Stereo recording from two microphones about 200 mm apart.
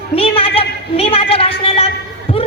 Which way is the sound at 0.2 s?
30° left (ahead or behind).